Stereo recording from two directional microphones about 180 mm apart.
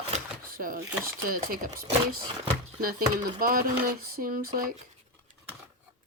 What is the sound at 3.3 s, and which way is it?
Speech, 55° right (ahead or behind).